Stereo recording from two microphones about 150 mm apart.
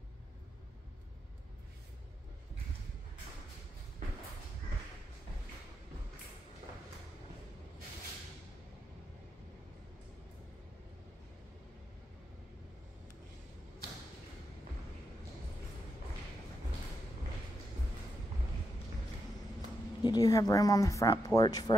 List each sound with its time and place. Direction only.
20.0 s a woman's voice: 25° left (ahead or behind)